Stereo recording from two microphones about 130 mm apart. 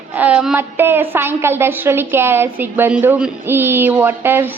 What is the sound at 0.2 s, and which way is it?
A woman's voice, 10° right (ahead or behind).